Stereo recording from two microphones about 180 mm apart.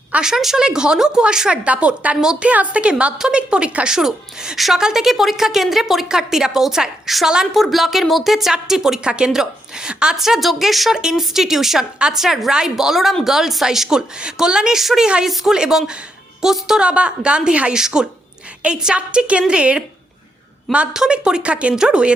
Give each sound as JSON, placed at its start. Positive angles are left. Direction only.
{"t": 0.1, "sound": "a woman's voice", "side_deg": -5}